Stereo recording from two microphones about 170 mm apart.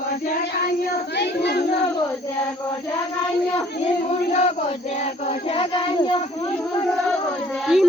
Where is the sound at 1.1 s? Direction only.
75° left (ahead or behind).